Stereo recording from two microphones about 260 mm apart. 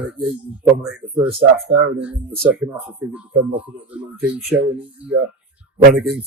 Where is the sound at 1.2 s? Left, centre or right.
Right.